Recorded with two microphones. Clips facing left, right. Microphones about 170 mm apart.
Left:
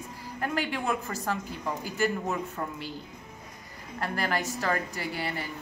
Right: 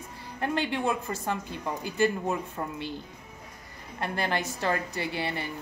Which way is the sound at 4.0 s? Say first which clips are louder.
Even; 25° right (ahead or behind).